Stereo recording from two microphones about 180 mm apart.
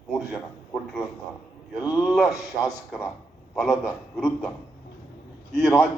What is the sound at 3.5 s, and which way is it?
Speech, centre (ahead or behind).